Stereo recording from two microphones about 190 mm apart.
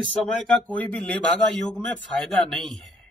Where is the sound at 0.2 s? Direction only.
5° left (ahead or behind).